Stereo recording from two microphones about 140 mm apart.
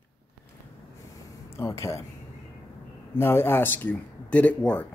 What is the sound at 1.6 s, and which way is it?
Speech, 20° left (ahead or behind).